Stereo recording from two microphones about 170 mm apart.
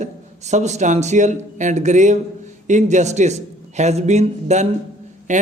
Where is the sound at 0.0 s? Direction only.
45° right (ahead or behind).